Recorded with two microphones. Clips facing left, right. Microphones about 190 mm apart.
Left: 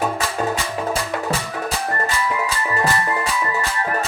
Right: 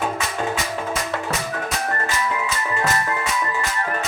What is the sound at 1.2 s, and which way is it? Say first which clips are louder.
Organ: left 2 dB; 30° left (ahead or behind).